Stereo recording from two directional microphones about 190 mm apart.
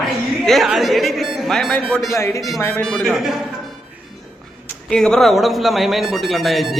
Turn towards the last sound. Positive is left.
turn(degrees=0)  # may be behind; listen again after turning